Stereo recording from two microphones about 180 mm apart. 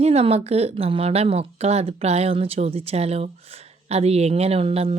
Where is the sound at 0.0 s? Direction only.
35° right (ahead or behind).